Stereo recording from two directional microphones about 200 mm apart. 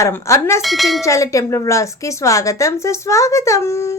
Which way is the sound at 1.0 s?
15° left (ahead or behind).